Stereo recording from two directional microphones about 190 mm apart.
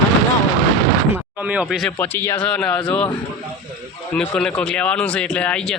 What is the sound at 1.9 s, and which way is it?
A man's voice, 10° left (ahead or behind).